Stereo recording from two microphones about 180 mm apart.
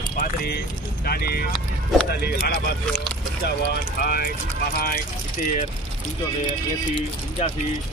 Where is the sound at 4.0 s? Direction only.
60° left (ahead or behind).